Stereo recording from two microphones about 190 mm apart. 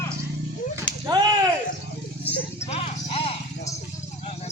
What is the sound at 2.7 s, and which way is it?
Clip-clop, 30° left (ahead or behind).